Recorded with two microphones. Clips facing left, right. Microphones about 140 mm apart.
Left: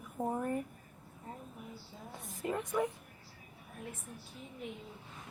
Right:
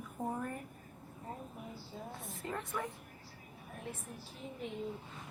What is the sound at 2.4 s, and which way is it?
Speech, 15° left (ahead or behind).